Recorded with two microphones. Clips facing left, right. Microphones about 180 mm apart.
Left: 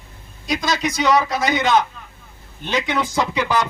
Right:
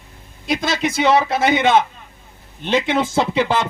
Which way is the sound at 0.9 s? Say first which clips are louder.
Right 3 dB; 55° right (ahead or behind).